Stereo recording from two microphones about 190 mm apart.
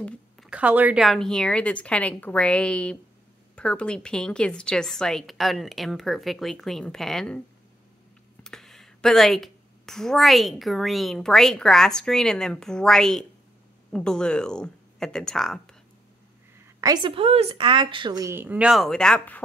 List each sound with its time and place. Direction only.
0.0 s a sound: 5° left (ahead or behind)
0.5 s speech: 5° right (ahead or behind)
8.5 s speech: centre (ahead or behind)
16.8 s a woman's voice: 25° right (ahead or behind); by 19.4 s 5° left (ahead or behind)